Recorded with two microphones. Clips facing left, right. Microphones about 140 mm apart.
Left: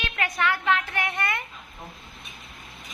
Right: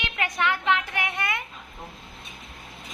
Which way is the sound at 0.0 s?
15° right (ahead or behind).